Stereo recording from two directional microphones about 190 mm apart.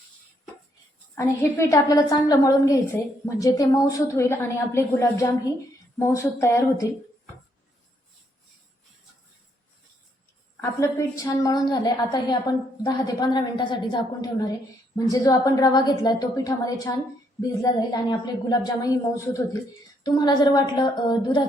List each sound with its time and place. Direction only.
1.1 s a woman's voice: 15° left (ahead or behind)
10.6 s a woman's voice: 15° left (ahead or behind)
18.1 s a woman's voice: 20° left (ahead or behind)